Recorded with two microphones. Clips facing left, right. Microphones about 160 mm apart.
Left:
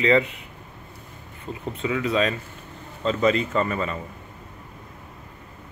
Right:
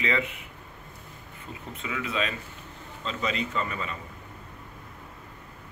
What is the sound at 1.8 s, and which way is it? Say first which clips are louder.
A man's voice: left 8 dB; 35° left (ahead or behind).